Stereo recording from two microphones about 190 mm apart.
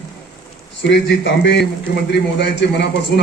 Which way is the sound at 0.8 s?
70° left (ahead or behind).